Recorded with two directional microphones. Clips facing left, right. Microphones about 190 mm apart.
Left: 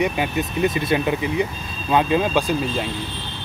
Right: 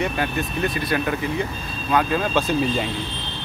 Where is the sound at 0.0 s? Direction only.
15° left (ahead or behind).